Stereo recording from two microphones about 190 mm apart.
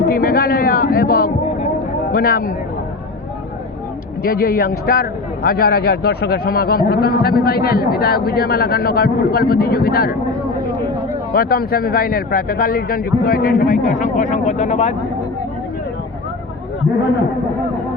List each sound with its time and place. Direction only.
0.1 s a man's voice: 50° left (ahead or behind)
4.2 s a man's voice: 50° left (ahead or behind)
11.3 s a man's voice: 50° left (ahead or behind); by 14.9 s 35° left (ahead or behind)